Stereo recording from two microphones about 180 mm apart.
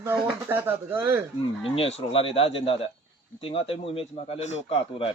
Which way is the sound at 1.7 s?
30° left (ahead or behind).